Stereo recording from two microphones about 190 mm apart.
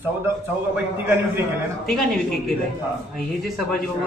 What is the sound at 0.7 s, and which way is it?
Speech, 10° right (ahead or behind).